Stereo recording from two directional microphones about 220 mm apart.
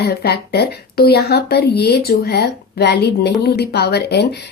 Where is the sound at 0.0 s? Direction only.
45° left (ahead or behind).